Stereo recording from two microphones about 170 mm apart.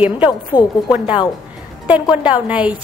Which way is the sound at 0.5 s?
20° left (ahead or behind).